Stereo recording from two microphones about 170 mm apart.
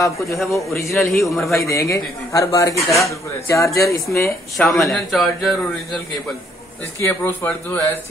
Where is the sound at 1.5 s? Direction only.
20° left (ahead or behind).